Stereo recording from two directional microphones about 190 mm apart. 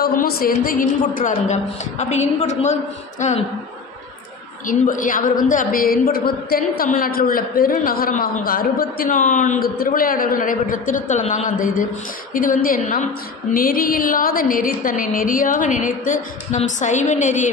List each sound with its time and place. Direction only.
0.0 s a woman's voice: 50° left (ahead or behind)
4.6 s a woman's voice: 45° left (ahead or behind)